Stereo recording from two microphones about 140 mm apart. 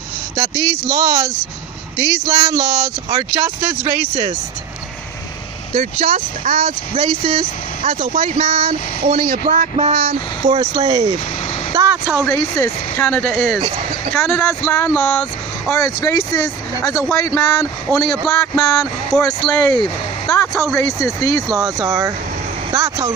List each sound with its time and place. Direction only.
0.4 s speech: 30° right (ahead or behind)
3.4 s speech: 15° right (ahead or behind)
4.1 s speech: 40° right (ahead or behind)
5.8 s speech: 55° right (ahead or behind)
9.3 s speech: 70° right (ahead or behind); by 10.5 s 55° right (ahead or behind)
10.5 s speech: 30° right (ahead or behind)
11.7 s vehicle: 20° right (ahead or behind)
12.3 s speech: 15° left (ahead or behind)
15.7 s speech: 20° left (ahead or behind)
18.1 s speech: 5° left (ahead or behind)
20.8 s speech: 20° left (ahead or behind)
21.5 s speech: 25° right (ahead or behind)